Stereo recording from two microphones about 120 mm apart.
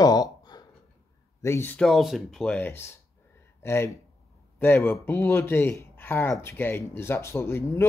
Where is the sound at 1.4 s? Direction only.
20° left (ahead or behind).